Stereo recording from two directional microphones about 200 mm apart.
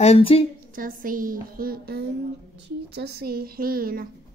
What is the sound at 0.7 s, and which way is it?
A woman's voice, 45° right (ahead or behind).